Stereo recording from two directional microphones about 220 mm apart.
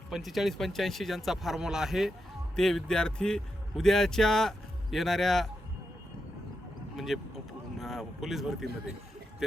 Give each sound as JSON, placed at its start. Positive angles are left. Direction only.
{"t": 0.1, "sound": "a man's voice", "side_deg": 0}
{"t": 6.9, "sound": "speech", "side_deg": 0}